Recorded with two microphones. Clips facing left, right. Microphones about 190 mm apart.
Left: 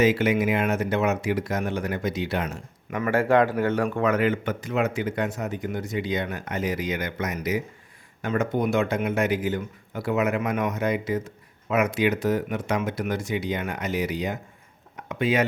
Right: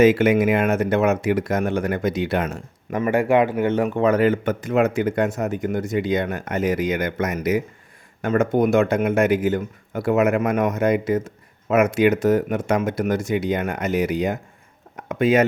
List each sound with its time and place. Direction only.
0.0 s speech: 50° right (ahead or behind)
3.0 s speech: 15° right (ahead or behind); by 15.4 s 45° right (ahead or behind)